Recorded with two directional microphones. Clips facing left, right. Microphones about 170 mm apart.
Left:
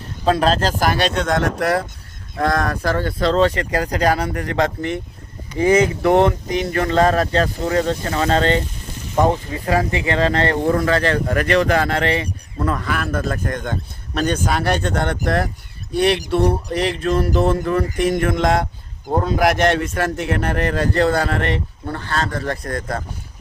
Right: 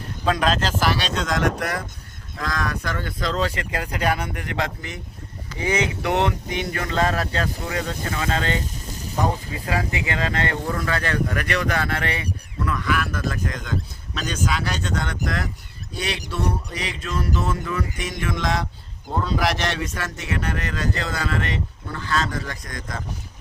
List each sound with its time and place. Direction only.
0.3 s speech: 35° left (ahead or behind)
5.5 s speech: 50° left (ahead or behind)
6.1 s speech: 35° left (ahead or behind)
12.5 s speech: 50° left (ahead or behind)
14.4 s a sound: 55° left (ahead or behind)
19.1 s speech: 50° left (ahead or behind)
21.1 s a sound: 55° left (ahead or behind)
21.8 s speech: 40° left (ahead or behind)
22.4 s a sound: 60° left (ahead or behind)